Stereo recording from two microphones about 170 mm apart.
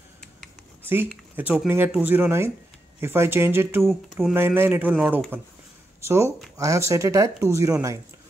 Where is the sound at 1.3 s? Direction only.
10° right (ahead or behind).